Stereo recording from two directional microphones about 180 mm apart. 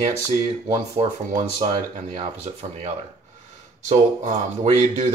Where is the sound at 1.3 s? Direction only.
45° right (ahead or behind).